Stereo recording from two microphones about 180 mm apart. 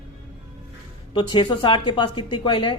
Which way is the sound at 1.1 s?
25° left (ahead or behind).